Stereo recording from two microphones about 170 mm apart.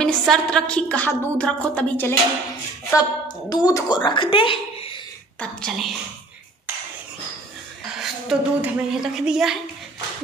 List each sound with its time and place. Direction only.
0.0 s speech: 5° left (ahead or behind)
2.9 s a woman's voice: 20° left (ahead or behind)
5.4 s speech: centre (ahead or behind)
8.0 s speech: 5° right (ahead or behind)